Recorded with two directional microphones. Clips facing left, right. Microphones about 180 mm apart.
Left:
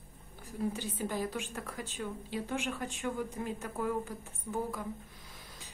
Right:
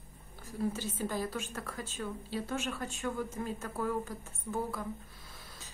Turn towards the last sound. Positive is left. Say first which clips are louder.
# even
turn(degrees=15)  # may be behind; listen again after turning